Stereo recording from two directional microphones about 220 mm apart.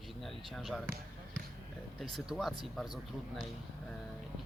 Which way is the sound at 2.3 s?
Centre (ahead or behind).